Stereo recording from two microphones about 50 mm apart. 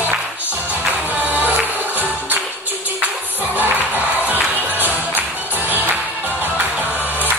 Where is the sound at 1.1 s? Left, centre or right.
Right.